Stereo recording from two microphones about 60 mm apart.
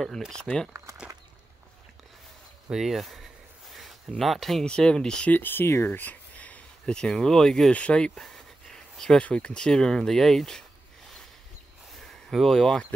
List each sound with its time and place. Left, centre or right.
0.0 s speech: centre
0.4 s speech: centre
2.7 s speech: centre
4.6 s speech: centre
5.3 s speech: left
5.9 s a sound: left
6.9 s speech: centre
8.1 s a sound: centre
9.2 s speech: centre
12.0 s a sound: centre